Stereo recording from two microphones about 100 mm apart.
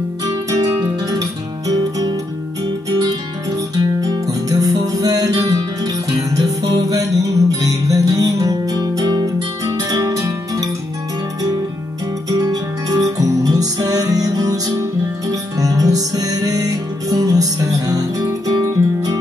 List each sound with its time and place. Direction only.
0.2 s music: 35° right (ahead or behind)
4.0 s music: 35° right (ahead or behind)
12.3 s music: 35° right (ahead or behind)